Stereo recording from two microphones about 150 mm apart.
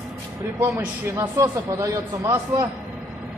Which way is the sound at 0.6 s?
15° right (ahead or behind).